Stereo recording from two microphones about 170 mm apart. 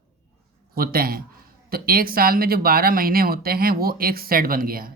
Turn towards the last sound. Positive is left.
turn(degrees=-60)  # may be behind; listen again after turning